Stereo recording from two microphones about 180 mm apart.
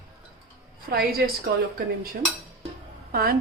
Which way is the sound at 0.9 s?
55° right (ahead or behind).